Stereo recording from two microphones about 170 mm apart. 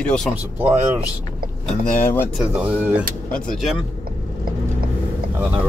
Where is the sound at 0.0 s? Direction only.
5° left (ahead or behind).